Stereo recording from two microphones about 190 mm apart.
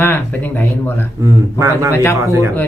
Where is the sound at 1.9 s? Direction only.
15° left (ahead or behind).